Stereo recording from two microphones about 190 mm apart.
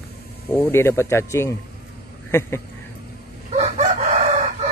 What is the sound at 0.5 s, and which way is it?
Speech, 10° left (ahead or behind).